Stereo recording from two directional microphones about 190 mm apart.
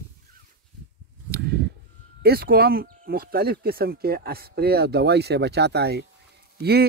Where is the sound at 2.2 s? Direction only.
55° right (ahead or behind).